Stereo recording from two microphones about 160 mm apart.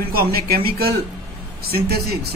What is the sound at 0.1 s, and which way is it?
Speech, 75° right (ahead or behind).